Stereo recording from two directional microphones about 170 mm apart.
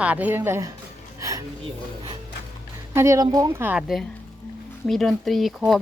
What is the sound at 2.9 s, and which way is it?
Speech, 15° right (ahead or behind).